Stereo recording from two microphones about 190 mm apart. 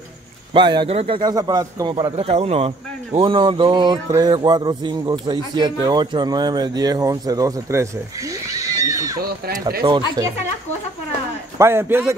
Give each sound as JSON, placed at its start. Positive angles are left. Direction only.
{"t": 0.5, "sound": "a man's voice", "side_deg": -25}
{"t": 9.2, "sound": "speech", "side_deg": -50}
{"t": 9.8, "sound": "a man's voice", "side_deg": -20}
{"t": 11.5, "sound": "a man's voice", "side_deg": -15}